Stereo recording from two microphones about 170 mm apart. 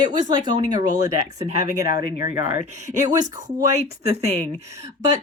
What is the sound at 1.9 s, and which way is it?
Speech, 60° left (ahead or behind).